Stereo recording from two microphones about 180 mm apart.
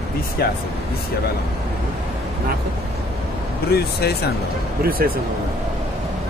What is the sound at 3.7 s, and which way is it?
Speech, 60° left (ahead or behind).